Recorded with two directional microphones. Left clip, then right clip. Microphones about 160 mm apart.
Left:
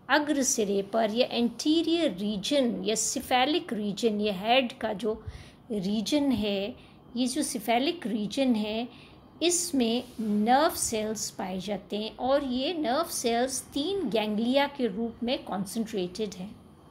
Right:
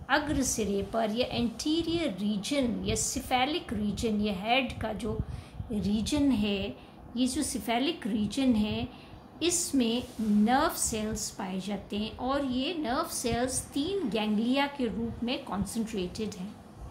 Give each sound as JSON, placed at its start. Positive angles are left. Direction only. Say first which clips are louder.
{"t": 0.1, "sound": "a woman's voice", "louder": "left 3 dB", "side_deg": 45}